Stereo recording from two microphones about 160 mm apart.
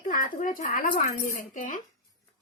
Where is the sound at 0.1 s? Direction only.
55° left (ahead or behind).